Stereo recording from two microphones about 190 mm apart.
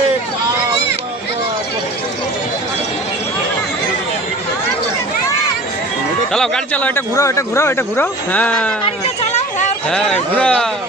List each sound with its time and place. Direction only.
6.3 s speech: 5° left (ahead or behind)
9.3 s a sound: 35° left (ahead or behind)
9.9 s speech: 5° left (ahead or behind)